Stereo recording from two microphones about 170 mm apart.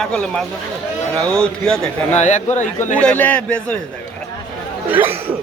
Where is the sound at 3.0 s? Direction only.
10° left (ahead or behind).